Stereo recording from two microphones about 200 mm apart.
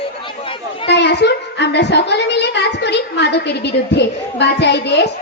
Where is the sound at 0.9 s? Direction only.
55° left (ahead or behind).